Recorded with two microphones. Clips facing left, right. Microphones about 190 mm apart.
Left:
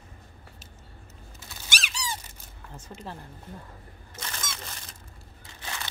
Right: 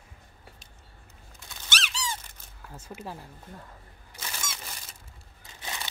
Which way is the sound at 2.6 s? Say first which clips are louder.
Right 1 dB; 5° right (ahead or behind).